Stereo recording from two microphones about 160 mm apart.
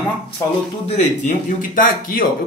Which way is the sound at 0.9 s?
50° left (ahead or behind).